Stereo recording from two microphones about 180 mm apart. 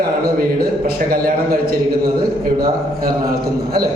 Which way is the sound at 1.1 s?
55° right (ahead or behind).